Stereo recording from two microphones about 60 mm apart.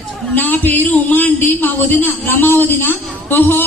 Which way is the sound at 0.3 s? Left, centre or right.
Left.